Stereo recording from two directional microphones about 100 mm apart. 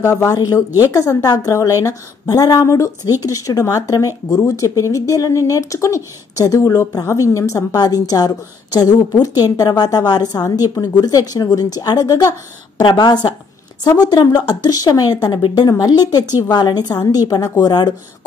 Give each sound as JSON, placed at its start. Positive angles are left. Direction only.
{"t": 0.0, "sound": "speech", "side_deg": 30}
{"t": 0.7, "sound": "a woman's voice", "side_deg": -20}
{"t": 0.9, "sound": "speech", "side_deg": 40}